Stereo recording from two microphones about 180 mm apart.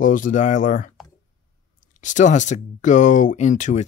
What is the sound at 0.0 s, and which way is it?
Speech, 45° left (ahead or behind).